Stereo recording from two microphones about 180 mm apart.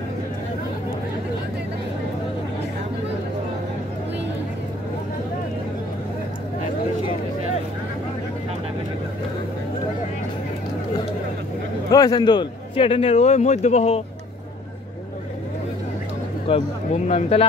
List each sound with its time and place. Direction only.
11.9 s a man's voice: 20° left (ahead or behind); by 14.0 s 35° left (ahead or behind)
16.4 s a man's voice: 35° left (ahead or behind)